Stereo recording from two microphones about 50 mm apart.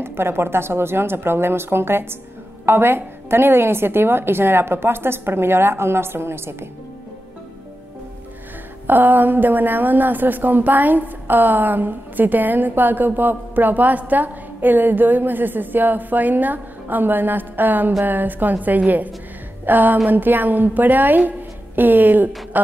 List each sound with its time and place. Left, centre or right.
0.0 s a woman's voice: right
8.8 s a woman's voice: right